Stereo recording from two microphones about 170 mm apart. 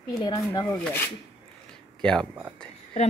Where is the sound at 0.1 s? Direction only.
25° left (ahead or behind).